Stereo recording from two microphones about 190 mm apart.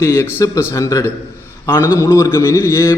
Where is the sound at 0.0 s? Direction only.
15° left (ahead or behind).